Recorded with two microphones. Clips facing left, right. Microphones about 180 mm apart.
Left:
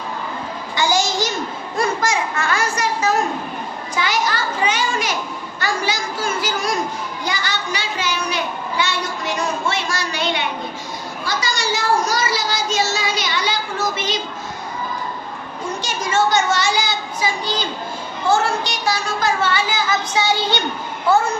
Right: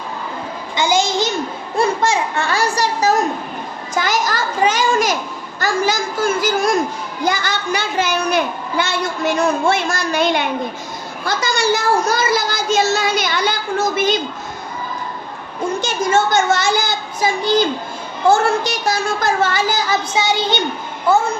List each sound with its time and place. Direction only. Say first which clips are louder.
0.8 s babbling: right 2 dB; 20° right (ahead or behind)
2.0 s a child's voice: right 3 dB; 30° right (ahead or behind); by 14.2 s 50° right (ahead or behind)
15.8 s a woman's voice: right 2 dB; 55° right (ahead or behind)
20.1 s a child's voice: right 1 dB; 20° right (ahead or behind)